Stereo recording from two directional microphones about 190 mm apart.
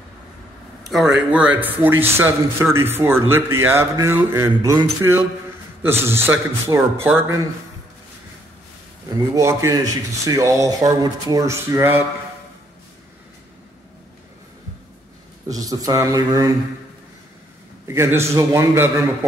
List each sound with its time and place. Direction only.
0.8 s a man's voice: centre (ahead or behind)
9.1 s a man's voice: 15° right (ahead or behind)
15.4 s speech: 20° right (ahead or behind)
17.8 s a man's voice: 15° right (ahead or behind)